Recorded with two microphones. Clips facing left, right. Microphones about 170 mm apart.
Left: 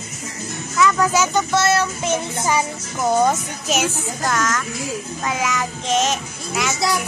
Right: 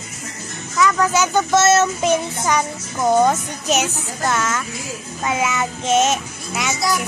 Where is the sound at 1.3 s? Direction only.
20° right (ahead or behind).